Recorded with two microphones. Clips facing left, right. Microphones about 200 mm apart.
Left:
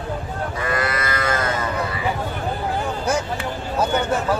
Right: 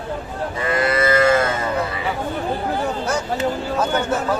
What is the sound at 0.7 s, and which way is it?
Livestock, 25° right (ahead or behind).